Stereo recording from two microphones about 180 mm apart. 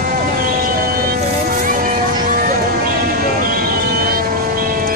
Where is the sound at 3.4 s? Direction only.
55° right (ahead or behind).